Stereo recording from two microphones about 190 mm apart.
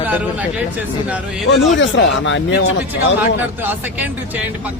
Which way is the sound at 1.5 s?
75° left (ahead or behind).